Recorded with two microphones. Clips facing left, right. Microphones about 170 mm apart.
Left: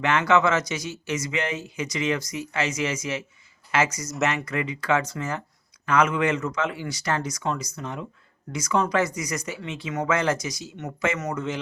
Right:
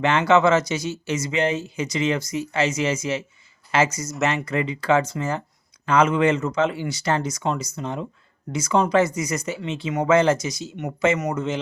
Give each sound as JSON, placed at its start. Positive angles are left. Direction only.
{"t": 0.0, "sound": "speech", "side_deg": -30}